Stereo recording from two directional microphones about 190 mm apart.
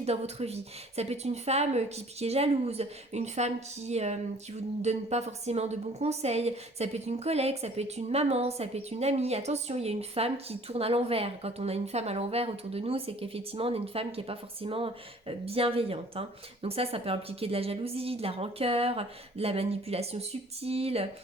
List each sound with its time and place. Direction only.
0.0 s a woman's voice: 35° right (ahead or behind)